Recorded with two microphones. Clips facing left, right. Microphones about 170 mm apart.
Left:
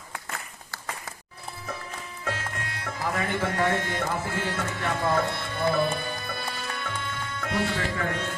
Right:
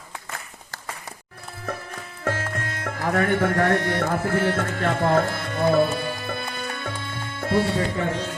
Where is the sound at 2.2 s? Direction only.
55° right (ahead or behind).